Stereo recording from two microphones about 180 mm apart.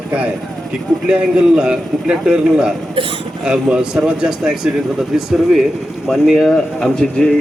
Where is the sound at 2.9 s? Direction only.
30° right (ahead or behind).